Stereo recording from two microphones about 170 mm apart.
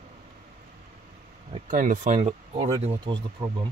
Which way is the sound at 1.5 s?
50° right (ahead or behind).